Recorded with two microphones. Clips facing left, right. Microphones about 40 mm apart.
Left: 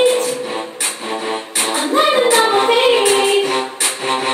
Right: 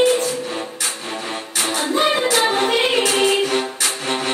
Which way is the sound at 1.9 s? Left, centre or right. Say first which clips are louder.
Left 6 dB; left.